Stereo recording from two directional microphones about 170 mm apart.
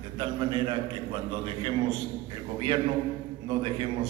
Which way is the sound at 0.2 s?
30° right (ahead or behind).